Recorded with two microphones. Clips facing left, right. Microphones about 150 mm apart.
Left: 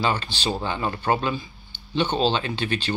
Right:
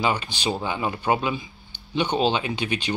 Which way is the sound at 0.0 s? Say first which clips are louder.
Even; 15° right (ahead or behind).